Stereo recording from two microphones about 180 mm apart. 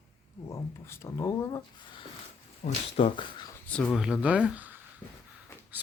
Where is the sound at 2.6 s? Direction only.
30° left (ahead or behind).